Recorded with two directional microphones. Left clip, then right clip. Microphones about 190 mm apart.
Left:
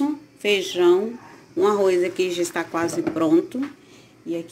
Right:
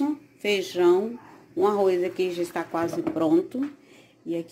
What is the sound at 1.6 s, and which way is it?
Speech, 5° right (ahead or behind).